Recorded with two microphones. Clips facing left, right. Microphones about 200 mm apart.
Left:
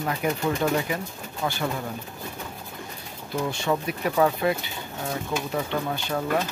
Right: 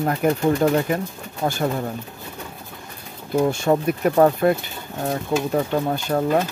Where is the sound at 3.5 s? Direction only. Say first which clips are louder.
Right 7 dB; 50° right (ahead or behind).